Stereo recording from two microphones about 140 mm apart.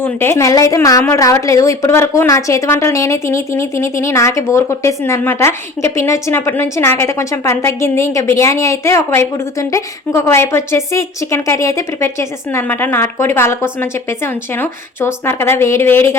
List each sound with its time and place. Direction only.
0.0 s a woman's voice: 15° left (ahead or behind)